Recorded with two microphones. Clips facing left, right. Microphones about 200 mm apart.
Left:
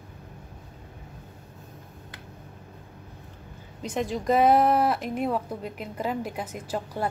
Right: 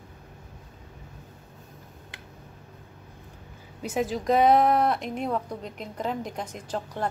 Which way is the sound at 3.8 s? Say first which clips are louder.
Right 1 dB; 5° right (ahead or behind).